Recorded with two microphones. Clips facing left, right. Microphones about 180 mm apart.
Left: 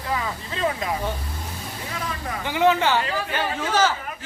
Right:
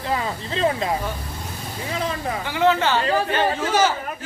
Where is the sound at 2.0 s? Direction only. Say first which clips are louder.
Right 6 dB; 25° right (ahead or behind).